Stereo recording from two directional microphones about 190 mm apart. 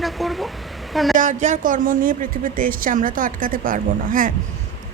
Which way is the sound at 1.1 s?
40° right (ahead or behind).